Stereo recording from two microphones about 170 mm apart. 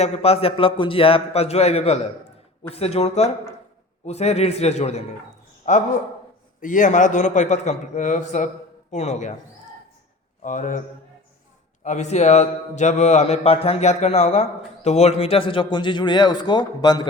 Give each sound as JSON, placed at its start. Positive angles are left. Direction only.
{"t": 0.0, "sound": "a man's voice", "side_deg": 35}
{"t": 10.4, "sound": "a man's voice", "side_deg": 50}